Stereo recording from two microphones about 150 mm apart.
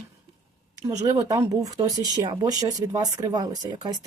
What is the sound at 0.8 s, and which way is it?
A woman's voice, 20° right (ahead or behind).